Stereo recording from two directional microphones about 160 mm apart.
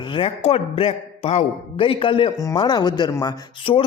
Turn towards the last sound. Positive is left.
turn(degrees=35)  # may be behind; listen again after turning